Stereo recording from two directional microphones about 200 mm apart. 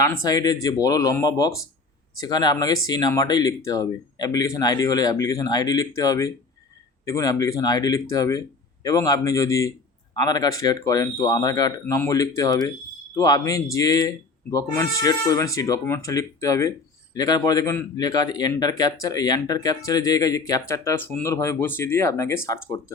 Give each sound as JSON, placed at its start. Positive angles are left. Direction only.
{"t": 0.0, "sound": "speech", "side_deg": 15}